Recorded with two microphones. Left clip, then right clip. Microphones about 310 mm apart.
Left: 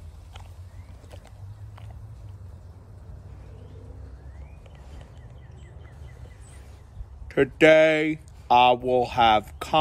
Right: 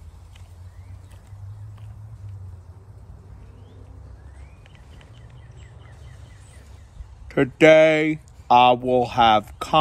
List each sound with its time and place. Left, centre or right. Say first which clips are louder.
7.2 s speech: right 3 dB; centre